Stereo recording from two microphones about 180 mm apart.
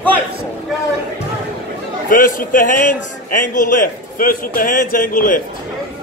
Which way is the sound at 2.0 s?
50° left (ahead or behind).